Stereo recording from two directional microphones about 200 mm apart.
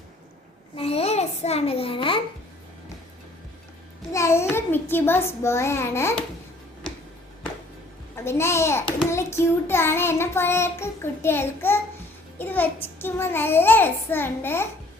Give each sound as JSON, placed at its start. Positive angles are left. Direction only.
{"t": 0.8, "sound": "a child's voice", "side_deg": 30}
{"t": 4.1, "sound": "child singing", "side_deg": 15}
{"t": 8.1, "sound": "a child's voice", "side_deg": 15}
{"t": 9.0, "sound": "child singing", "side_deg": 15}